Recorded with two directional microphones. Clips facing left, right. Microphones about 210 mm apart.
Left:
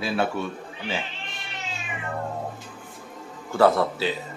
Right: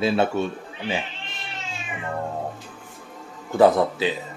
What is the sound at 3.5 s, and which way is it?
Speech, 15° right (ahead or behind).